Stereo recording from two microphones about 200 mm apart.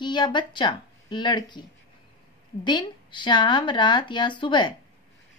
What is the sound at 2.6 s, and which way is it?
A woman's voice, 25° left (ahead or behind).